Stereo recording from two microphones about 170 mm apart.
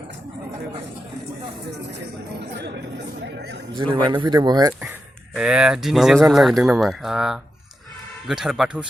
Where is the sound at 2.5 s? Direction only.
80° right.